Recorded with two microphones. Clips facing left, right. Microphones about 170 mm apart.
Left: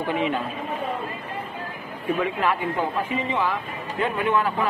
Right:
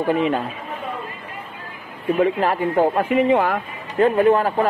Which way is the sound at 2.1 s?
40° right (ahead or behind).